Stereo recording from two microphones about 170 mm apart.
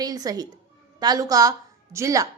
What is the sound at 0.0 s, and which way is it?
A woman's voice, 20° right (ahead or behind).